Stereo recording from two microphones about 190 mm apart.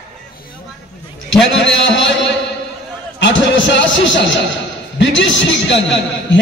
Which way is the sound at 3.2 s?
80° left.